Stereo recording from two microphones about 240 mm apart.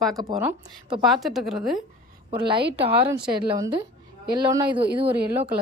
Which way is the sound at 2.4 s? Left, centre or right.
Right.